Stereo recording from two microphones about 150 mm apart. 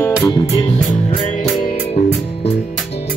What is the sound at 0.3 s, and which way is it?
Music, 35° left (ahead or behind).